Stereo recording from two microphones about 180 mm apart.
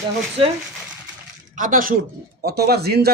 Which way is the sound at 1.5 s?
45° right (ahead or behind).